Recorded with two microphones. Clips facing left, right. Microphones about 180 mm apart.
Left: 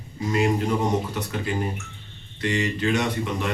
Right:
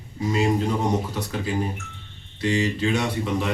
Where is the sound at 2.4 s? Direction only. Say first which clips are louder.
Right 2 dB; 5° right (ahead or behind).